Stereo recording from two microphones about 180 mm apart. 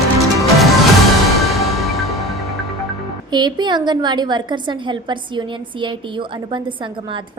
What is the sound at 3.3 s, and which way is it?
A woman's voice, 25° right (ahead or behind).